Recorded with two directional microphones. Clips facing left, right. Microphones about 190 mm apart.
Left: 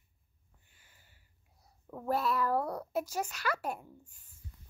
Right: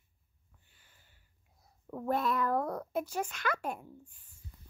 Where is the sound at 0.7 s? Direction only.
10° left (ahead or behind).